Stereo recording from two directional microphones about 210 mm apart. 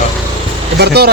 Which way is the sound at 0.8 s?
50° right (ahead or behind).